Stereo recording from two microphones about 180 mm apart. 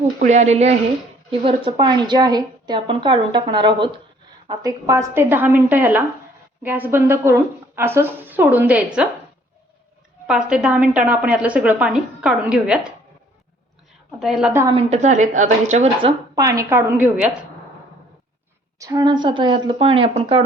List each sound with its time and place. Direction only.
0.2 s a woman's voice: 40° right (ahead or behind); by 9.0 s 5° right (ahead or behind)
10.2 s a woman's voice: 5° right (ahead or behind)
14.2 s a woman's voice: centre (ahead or behind)
14.7 s a woman's voice: 35° right (ahead or behind); by 17.3 s 10° right (ahead or behind)
18.8 s a woman's voice: 20° right (ahead or behind)